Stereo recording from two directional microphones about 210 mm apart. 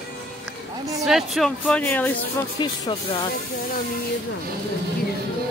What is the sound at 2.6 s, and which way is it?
Speech, 20° left (ahead or behind).